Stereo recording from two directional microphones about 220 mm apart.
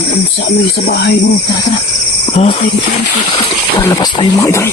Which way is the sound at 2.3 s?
30° left (ahead or behind).